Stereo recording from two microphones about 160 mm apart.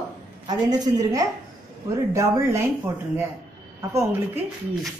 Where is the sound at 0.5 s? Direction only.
25° right (ahead or behind).